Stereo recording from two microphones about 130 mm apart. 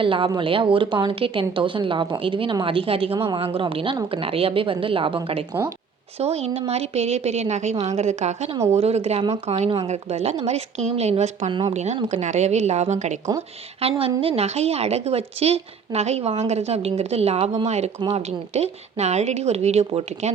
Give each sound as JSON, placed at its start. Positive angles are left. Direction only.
{"t": 0.0, "sound": "a woman's voice", "side_deg": -40}
{"t": 13.8, "sound": "a woman's voice", "side_deg": -50}